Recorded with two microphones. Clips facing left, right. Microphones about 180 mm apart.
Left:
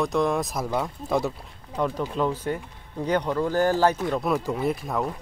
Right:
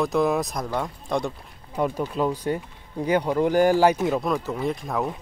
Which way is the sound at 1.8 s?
10° right (ahead or behind).